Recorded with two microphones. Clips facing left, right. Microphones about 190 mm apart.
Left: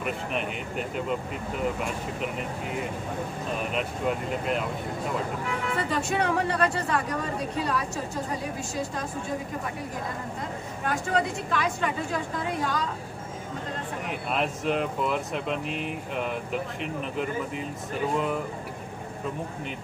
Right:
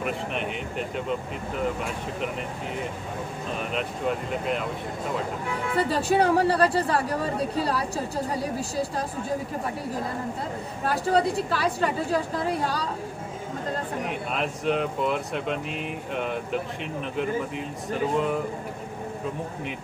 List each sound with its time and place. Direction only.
0.0 s speech: centre (ahead or behind)
5.8 s speech: 35° right (ahead or behind)
10.9 s speech: 35° right (ahead or behind)
14.3 s speech: centre (ahead or behind)